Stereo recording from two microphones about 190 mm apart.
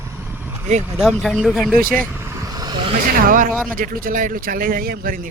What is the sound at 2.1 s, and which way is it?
Vehicle, 15° right (ahead or behind).